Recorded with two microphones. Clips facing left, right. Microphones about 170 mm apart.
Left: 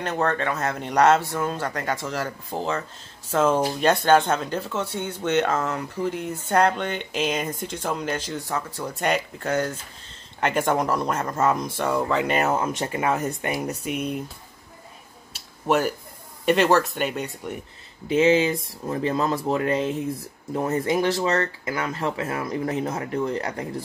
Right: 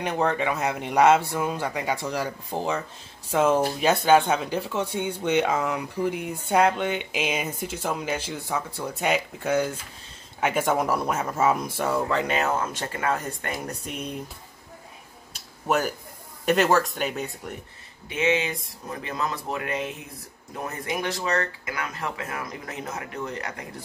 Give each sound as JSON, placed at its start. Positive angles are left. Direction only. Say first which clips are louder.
{"t": 0.0, "sound": "speech", "louder": "even", "side_deg": -10}
{"t": 12.4, "sound": "speech", "louder": "left 3 dB", "side_deg": 20}
{"t": 13.5, "sound": "speech", "louder": "left 5 dB", "side_deg": 5}
{"t": 15.3, "sound": "a sound", "louder": "left 3 dB", "side_deg": 0}
{"t": 16.4, "sound": "speech", "louder": "left 2 dB", "side_deg": 0}
{"t": 18.0, "sound": "speech", "louder": "left 6 dB", "side_deg": 30}